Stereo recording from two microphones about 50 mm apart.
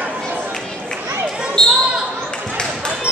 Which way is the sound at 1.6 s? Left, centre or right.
Centre.